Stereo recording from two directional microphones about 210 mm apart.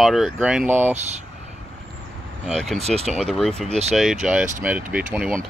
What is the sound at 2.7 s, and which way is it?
Speech, 30° right (ahead or behind).